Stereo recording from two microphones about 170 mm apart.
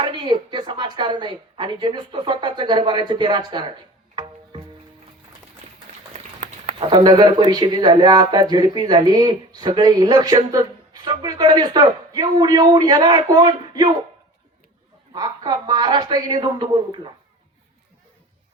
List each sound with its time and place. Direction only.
0.0 s speech: 30° right (ahead or behind)
4.1 s music: 25° right (ahead or behind)
6.7 s speech: 30° right (ahead or behind)
15.1 s speech: 25° right (ahead or behind)